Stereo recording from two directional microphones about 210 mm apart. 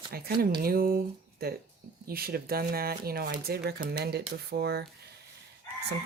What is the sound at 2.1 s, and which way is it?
Speech, 45° right (ahead or behind).